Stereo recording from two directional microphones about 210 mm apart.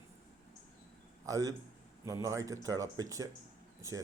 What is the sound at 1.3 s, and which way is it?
Speech, 15° right (ahead or behind).